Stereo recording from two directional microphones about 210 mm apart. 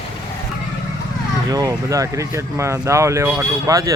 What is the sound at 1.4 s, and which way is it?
Speech, 20° right (ahead or behind).